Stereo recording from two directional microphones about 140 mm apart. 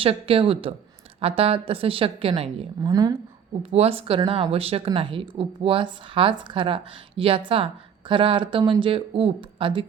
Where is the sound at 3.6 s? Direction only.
45° right (ahead or behind).